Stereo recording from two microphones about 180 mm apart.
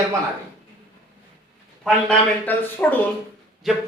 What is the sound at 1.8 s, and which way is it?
Speech, 10° left (ahead or behind).